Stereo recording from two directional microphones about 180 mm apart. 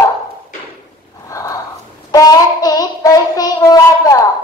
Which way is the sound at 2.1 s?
20° left (ahead or behind).